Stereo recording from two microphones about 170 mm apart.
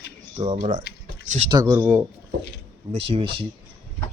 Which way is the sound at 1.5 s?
25° right (ahead or behind).